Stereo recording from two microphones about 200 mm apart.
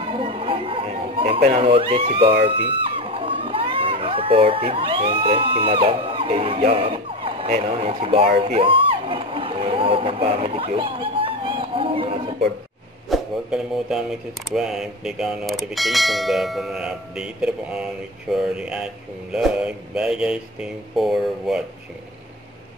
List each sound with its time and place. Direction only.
0.0 s chatter: 25° right (ahead or behind)
1.4 s speech: 30° right (ahead or behind)
2.4 s a sound: 25° right (ahead or behind)
5.2 s speech: 30° right (ahead or behind)
13.1 s speech: 5° right (ahead or behind)